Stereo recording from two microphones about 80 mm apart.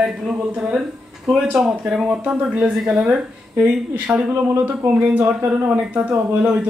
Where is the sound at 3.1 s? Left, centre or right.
Centre.